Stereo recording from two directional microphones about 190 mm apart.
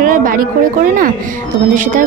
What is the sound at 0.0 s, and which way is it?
Speech, 45° right (ahead or behind).